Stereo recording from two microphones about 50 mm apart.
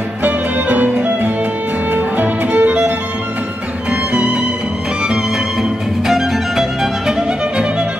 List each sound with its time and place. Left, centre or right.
0.2 s music: right
3.9 s music: right
5.6 s music: centre